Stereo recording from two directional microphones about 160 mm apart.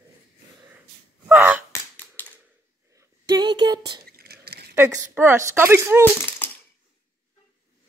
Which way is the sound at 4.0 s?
75° right (ahead or behind).